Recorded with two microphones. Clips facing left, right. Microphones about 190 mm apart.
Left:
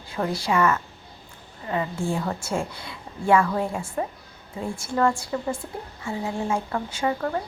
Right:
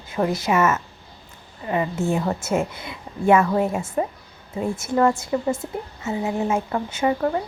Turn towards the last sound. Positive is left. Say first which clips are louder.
# right 4 dB
turn(degrees=-20)  # may be behind; listen again after turning